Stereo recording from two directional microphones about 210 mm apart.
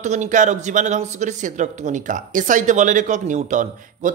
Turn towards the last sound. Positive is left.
turn(degrees=-35)  # may be behind; listen again after turning